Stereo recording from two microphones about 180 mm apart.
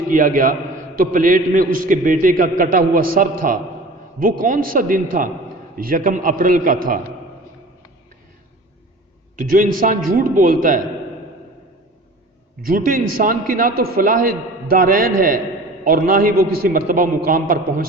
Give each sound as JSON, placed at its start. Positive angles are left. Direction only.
{"t": 0.1, "sound": "a man's voice", "side_deg": -50}
{"t": 9.3, "sound": "a man's voice", "side_deg": -50}
{"t": 12.6, "sound": "a man's voice", "side_deg": -55}